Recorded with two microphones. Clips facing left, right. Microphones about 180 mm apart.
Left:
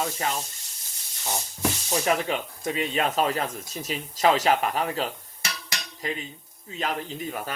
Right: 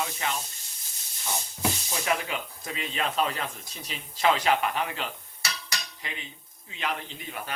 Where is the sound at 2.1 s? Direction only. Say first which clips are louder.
Left 3 dB; 40° left (ahead or behind).